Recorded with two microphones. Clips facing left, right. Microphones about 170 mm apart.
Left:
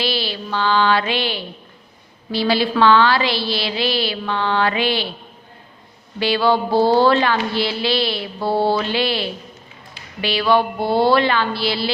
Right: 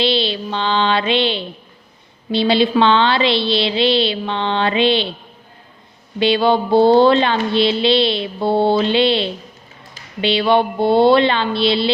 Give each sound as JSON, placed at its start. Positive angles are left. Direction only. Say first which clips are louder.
{"t": 0.0, "sound": "a woman's voice", "louder": "right 5 dB", "side_deg": -25}
{"t": 6.1, "sound": "a woman's voice", "louder": "right 3 dB", "side_deg": -20}